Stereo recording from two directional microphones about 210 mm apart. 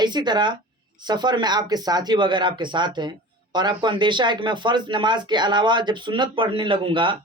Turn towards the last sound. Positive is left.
turn(degrees=-25)  # may be behind; listen again after turning